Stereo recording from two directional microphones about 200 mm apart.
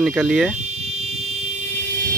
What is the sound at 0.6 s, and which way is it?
Fire alarm, 35° right (ahead or behind).